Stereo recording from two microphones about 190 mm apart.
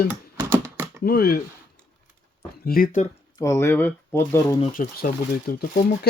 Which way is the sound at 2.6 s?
50° left (ahead or behind).